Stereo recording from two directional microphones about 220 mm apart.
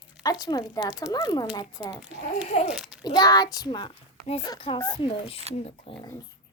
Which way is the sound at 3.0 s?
20° left (ahead or behind).